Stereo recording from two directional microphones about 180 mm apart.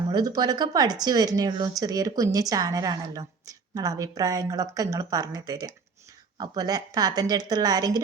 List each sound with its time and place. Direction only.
0.1 s speech: 20° right (ahead or behind)